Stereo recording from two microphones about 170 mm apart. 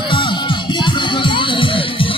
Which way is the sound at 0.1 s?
30° left (ahead or behind).